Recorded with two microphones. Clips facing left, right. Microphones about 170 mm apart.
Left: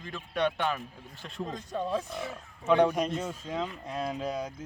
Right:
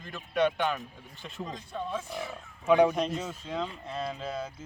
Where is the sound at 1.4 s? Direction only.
45° left (ahead or behind).